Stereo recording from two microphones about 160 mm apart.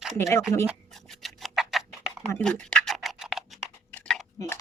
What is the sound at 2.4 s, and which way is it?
Scratch, 5° left (ahead or behind).